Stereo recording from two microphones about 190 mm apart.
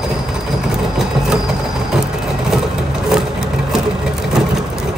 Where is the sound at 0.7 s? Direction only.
5° right (ahead or behind).